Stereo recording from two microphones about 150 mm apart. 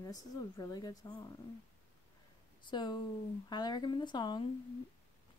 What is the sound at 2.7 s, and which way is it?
Speech, 30° left (ahead or behind).